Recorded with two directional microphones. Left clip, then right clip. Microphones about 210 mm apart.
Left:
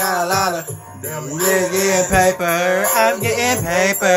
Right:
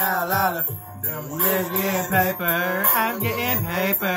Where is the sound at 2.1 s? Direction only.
15° left (ahead or behind).